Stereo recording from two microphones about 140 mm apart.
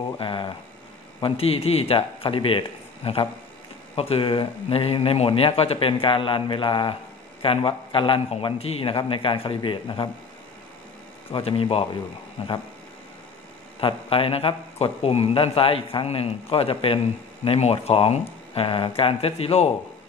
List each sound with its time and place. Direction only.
0.2 s speech: 35° left (ahead or behind)
11.3 s speech: 40° left (ahead or behind)
13.7 s a man's voice: 40° left (ahead or behind)